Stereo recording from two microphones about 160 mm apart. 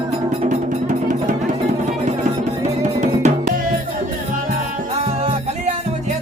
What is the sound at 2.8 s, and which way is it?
Music, 45° right (ahead or behind).